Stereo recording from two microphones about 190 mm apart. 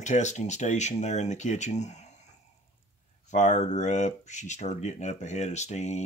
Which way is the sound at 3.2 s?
40° left (ahead or behind).